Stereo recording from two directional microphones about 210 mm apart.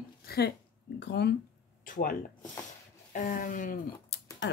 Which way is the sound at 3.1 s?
40° left (ahead or behind).